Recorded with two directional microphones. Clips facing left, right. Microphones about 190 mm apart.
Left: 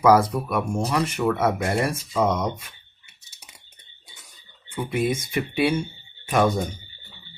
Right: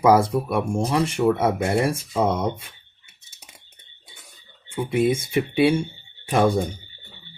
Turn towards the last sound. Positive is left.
turn(degrees=-30)  # may be behind; listen again after turning